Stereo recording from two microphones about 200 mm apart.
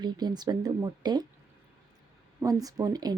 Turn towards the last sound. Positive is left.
turn(degrees=-20)  # may be behind; listen again after turning